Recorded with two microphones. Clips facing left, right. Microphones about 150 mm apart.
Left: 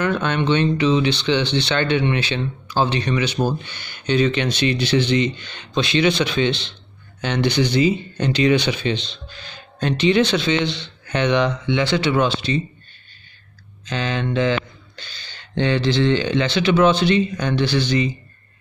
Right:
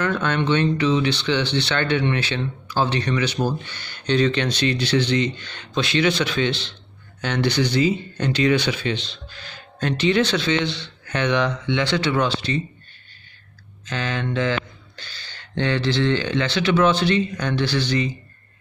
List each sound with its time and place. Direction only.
0.0 s speech: 15° left (ahead or behind)
13.8 s speech: 20° left (ahead or behind)